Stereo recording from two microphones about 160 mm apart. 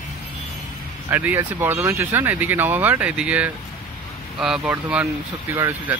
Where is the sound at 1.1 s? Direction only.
15° right (ahead or behind).